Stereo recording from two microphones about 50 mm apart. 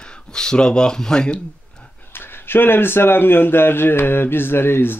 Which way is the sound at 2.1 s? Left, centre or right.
Left.